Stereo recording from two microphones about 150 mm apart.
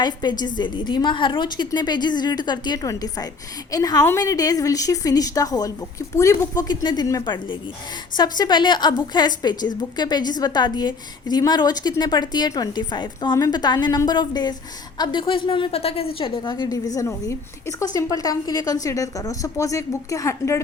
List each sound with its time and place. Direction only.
0.0 s a woman's voice: 30° left (ahead or behind)